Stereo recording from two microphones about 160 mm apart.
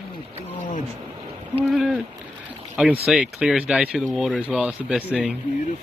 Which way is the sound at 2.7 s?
5° right (ahead or behind).